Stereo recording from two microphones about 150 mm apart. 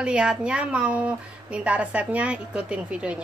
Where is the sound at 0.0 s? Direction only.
5° right (ahead or behind).